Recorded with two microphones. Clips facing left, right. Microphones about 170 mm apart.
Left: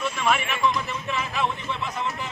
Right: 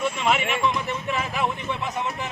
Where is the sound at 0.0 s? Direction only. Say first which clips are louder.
Right 1 dB; 20° right (ahead or behind).